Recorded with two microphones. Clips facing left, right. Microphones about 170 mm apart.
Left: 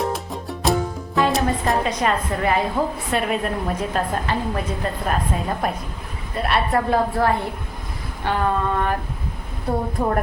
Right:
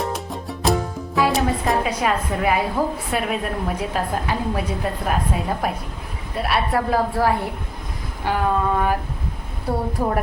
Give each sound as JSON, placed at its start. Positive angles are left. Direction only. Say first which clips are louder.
{"t": 0.0, "sound": "music", "louder": "left 1 dB", "side_deg": 0}
{"t": 3.1, "sound": "a woman's voice", "louder": "left 1 dB", "side_deg": 0}
{"t": 8.2, "sound": "a sound", "louder": "right 1 dB", "side_deg": -10}